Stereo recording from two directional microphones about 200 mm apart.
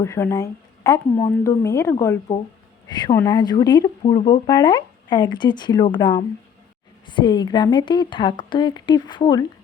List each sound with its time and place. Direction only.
0.0 s a woman's voice: 15° left (ahead or behind)